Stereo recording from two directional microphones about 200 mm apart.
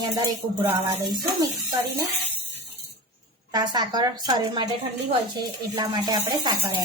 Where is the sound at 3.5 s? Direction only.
20° right (ahead or behind).